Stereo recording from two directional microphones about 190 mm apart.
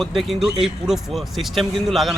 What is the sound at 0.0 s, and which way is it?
Speech, centre (ahead or behind).